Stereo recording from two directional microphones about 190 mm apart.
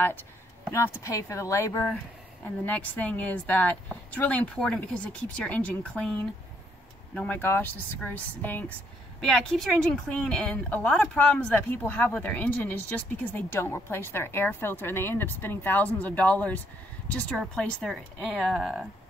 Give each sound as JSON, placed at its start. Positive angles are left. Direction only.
{"t": 0.7, "sound": "speech", "side_deg": 15}
{"t": 7.2, "sound": "speech", "side_deg": 10}